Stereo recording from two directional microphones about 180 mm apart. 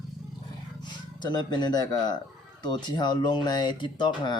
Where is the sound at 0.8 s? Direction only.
25° left (ahead or behind).